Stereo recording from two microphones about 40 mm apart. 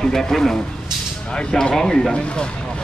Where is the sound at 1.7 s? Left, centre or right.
Centre.